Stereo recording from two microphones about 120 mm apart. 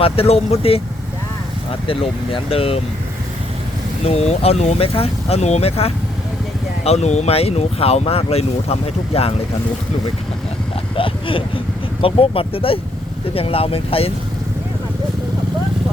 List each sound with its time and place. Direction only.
0.0 s speech: 55° left (ahead or behind)
1.9 s speech: 50° left (ahead or behind)
4.0 s speech: 60° left (ahead or behind)
10.9 s speech: 45° left (ahead or behind)